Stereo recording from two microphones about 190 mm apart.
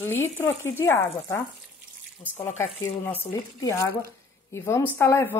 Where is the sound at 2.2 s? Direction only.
10° left (ahead or behind).